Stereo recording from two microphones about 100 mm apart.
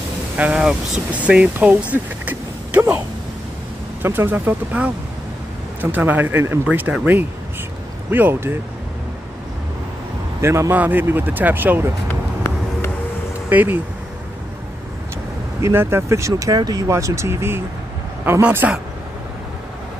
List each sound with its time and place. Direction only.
0.4 s speech: 10° right (ahead or behind)
4.0 s speech: 20° right (ahead or behind)
10.4 s speech: 25° right (ahead or behind)
13.5 s speech: 20° right (ahead or behind)
15.6 s speech: 25° right (ahead or behind)